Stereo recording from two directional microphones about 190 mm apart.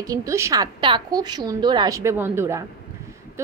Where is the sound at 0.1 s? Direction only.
15° right (ahead or behind).